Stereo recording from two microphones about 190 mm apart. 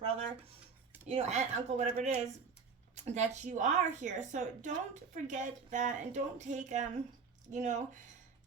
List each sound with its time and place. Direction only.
1.0 s a woman's voice: 35° right (ahead or behind)